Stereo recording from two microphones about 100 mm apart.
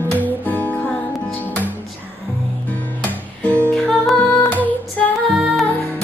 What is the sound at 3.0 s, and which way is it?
Music, 15° left (ahead or behind).